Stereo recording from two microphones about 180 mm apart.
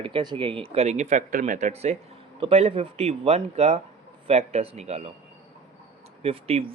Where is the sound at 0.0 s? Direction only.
25° right (ahead or behind).